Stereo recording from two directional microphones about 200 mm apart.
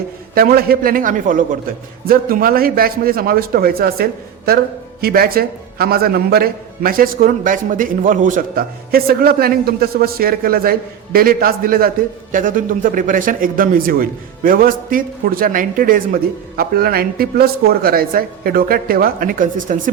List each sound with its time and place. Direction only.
0.3 s a man's voice: 50° right (ahead or behind)